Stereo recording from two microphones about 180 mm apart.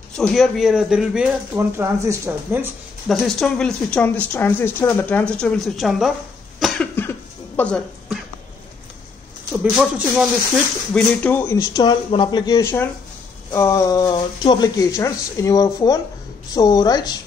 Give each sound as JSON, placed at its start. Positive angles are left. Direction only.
{"t": 0.1, "sound": "a woman's voice", "side_deg": 0}
{"t": 1.5, "sound": "speech", "side_deg": -15}
{"t": 3.1, "sound": "a woman's voice", "side_deg": 0}
{"t": 6.6, "sound": "cough", "side_deg": 10}
{"t": 10.5, "sound": "speech", "side_deg": 5}